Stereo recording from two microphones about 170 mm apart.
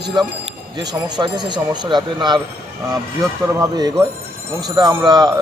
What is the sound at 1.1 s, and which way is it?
Speech, 25° right (ahead or behind).